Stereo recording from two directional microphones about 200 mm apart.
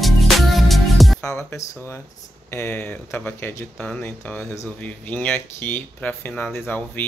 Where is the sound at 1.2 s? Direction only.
15° left (ahead or behind).